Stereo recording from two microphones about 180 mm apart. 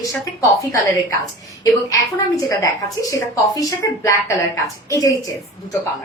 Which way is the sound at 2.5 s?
15° left (ahead or behind).